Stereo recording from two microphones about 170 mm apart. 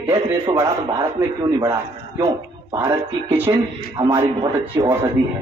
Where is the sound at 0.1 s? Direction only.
20° right (ahead or behind).